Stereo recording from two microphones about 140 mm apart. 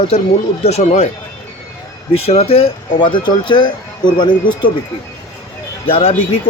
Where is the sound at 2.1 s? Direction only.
45° left (ahead or behind).